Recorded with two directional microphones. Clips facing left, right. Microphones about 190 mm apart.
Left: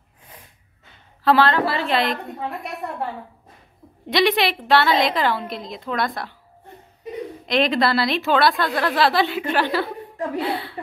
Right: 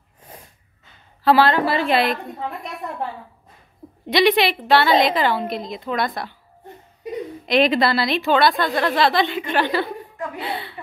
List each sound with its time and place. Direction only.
1.2 s a woman's voice: 10° right (ahead or behind)
4.1 s a woman's voice: centre (ahead or behind)
7.4 s a woman's voice: 5° right (ahead or behind)
10.1 s speech: 35° left (ahead or behind)
10.4 s a woman's voice: centre (ahead or behind)